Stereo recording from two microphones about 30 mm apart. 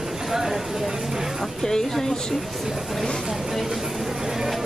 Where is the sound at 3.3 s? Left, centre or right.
Centre.